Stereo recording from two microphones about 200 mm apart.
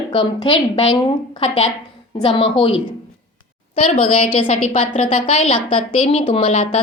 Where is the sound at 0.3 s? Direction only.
30° left (ahead or behind).